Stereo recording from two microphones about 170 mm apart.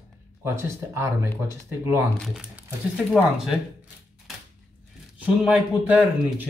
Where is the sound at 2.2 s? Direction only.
5° right (ahead or behind).